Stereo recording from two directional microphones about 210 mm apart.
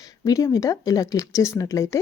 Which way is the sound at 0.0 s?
15° left (ahead or behind).